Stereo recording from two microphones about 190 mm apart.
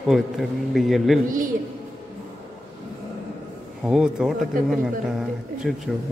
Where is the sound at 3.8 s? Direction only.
5° right (ahead or behind).